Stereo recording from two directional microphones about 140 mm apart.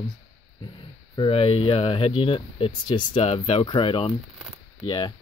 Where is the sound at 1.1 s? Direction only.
40° left (ahead or behind).